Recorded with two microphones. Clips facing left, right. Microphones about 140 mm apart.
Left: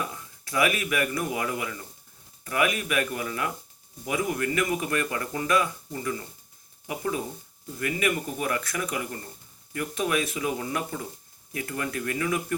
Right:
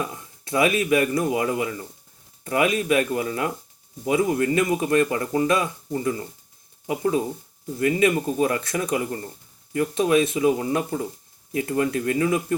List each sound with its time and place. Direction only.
0.0 s speech: 25° right (ahead or behind)